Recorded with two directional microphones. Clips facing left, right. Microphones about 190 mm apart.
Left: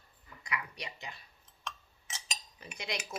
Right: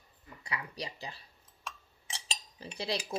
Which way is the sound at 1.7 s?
10° right (ahead or behind).